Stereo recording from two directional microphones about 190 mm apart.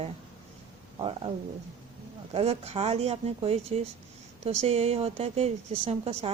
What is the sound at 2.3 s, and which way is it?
A woman's voice, 35° right (ahead or behind).